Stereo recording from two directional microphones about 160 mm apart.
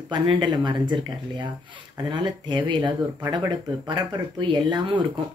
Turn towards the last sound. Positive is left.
turn(degrees=-25)  # may be behind; listen again after turning